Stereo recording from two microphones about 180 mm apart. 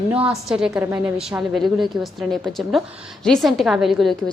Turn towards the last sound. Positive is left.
turn(degrees=0)  # may be behind; listen again after turning